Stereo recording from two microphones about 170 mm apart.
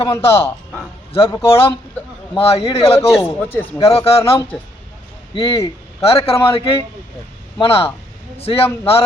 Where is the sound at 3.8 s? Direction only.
35° left (ahead or behind).